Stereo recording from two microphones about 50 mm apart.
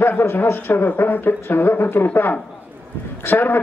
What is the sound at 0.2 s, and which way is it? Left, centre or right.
A man's voice, left.